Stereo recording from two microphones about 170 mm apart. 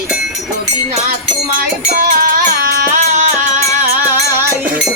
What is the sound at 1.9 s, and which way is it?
Music, 60° right (ahead or behind).